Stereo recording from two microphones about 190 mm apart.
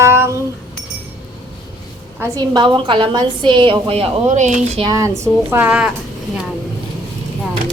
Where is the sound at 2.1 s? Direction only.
20° right (ahead or behind); by 4.8 s 40° right (ahead or behind).